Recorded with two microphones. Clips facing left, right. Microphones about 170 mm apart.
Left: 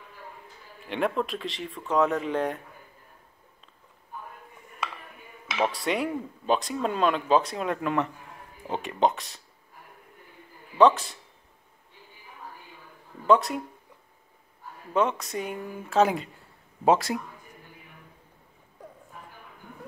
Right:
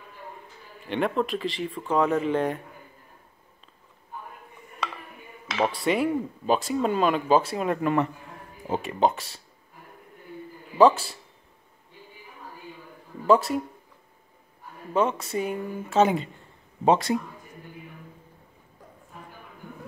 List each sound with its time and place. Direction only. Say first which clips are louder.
0.8 s speech: right 2 dB; centre (ahead or behind)
5.5 s speech: right 2 dB; centre (ahead or behind)
13.3 s speech: right 1 dB; centre (ahead or behind)
14.9 s speech: right 1 dB; centre (ahead or behind)